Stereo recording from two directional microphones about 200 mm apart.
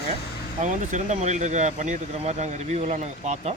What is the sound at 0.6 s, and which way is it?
Speech, 35° right (ahead or behind).